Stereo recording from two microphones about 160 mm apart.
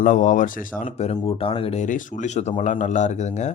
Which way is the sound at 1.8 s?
55° left (ahead or behind).